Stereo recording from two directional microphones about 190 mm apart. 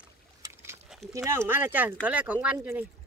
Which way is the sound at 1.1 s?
15° right (ahead or behind).